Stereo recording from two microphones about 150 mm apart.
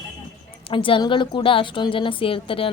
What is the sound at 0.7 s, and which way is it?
Speech, 35° left (ahead or behind).